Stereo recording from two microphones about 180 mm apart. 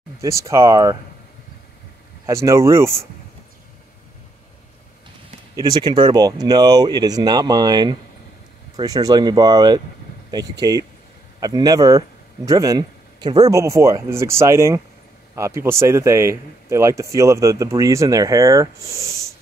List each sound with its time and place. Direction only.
0.2 s speech: 15° right (ahead or behind)
2.2 s speech: 15° right (ahead or behind)
5.6 s speech: 20° right (ahead or behind)